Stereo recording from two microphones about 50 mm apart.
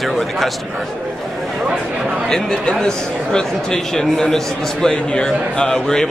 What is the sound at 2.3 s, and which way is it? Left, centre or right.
Speech, centre.